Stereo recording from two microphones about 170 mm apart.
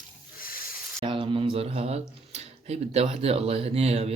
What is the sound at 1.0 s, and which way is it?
Speech, 30° right (ahead or behind).